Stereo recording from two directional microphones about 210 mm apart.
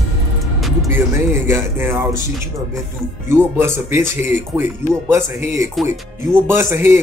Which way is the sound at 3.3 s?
10° right (ahead or behind).